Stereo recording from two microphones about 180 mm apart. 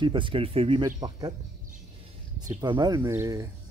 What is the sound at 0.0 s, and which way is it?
Speech, 25° right (ahead or behind).